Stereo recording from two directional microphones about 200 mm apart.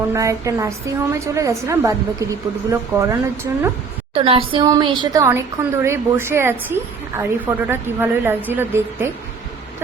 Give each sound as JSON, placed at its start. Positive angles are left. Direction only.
{"t": 0.1, "sound": "a woman's voice", "side_deg": -15}
{"t": 4.1, "sound": "a woman's voice", "side_deg": -30}
{"t": 5.2, "sound": "a woman's voice", "side_deg": -15}